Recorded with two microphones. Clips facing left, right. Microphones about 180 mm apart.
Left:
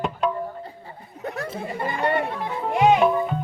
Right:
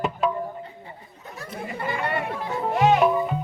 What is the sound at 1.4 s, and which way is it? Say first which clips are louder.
Chatter: right 2 dB; 35° left (ahead or behind).